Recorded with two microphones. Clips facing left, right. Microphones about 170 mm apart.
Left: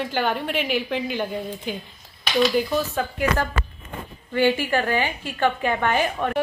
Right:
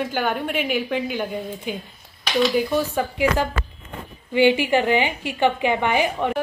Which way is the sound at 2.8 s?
10° right (ahead or behind).